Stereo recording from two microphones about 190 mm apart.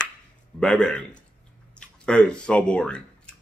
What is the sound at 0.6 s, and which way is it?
A man's voice, 5° left (ahead or behind).